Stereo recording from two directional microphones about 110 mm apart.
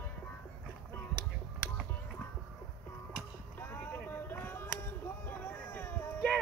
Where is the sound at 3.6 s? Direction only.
20° left (ahead or behind).